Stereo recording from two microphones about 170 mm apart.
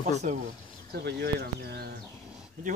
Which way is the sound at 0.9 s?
75° right (ahead or behind).